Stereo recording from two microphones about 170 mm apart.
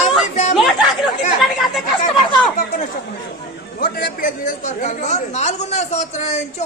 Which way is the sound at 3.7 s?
65° left (ahead or behind).